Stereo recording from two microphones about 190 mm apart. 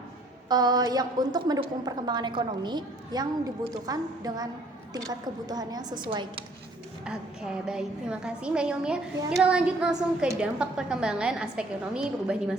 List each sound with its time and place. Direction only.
0.4 s a woman's voice: 20° right (ahead or behind)
7.0 s a woman's voice: 5° right (ahead or behind)